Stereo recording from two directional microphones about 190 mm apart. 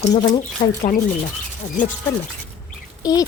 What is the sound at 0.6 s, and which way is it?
Speech, 40° left (ahead or behind).